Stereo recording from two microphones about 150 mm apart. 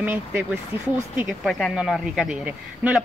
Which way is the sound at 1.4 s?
Centre (ahead or behind).